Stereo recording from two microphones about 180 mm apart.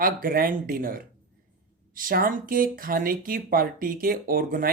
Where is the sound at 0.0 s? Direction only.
50° right (ahead or behind).